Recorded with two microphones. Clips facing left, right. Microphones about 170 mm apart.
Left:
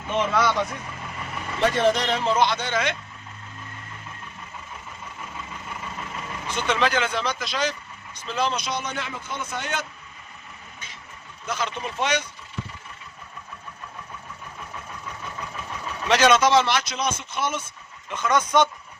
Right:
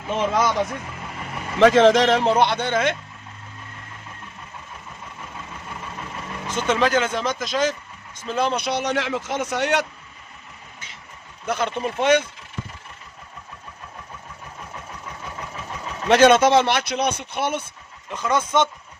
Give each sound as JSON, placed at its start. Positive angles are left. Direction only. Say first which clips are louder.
{"t": 0.3, "sound": "speech", "louder": "right 2 dB", "side_deg": -40}
{"t": 1.5, "sound": "a man's voice", "louder": "right 7 dB", "side_deg": -90}
{"t": 6.7, "sound": "speech", "louder": "right 4 dB", "side_deg": -45}
{"t": 11.4, "sound": "speech", "louder": "right 5 dB", "side_deg": -55}
{"t": 16.0, "sound": "speech", "louder": "right 4 dB", "side_deg": -55}
{"t": 18.1, "sound": "speech", "louder": "even", "side_deg": -30}